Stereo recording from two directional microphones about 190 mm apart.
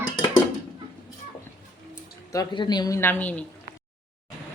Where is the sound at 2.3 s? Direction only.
25° left (ahead or behind); by 3.4 s 10° left (ahead or behind).